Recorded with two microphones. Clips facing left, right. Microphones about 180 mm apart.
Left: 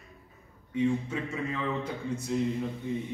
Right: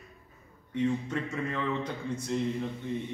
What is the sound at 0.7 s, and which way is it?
Speech, 5° left (ahead or behind).